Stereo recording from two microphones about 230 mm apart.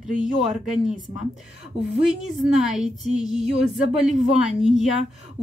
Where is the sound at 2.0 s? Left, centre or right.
Centre.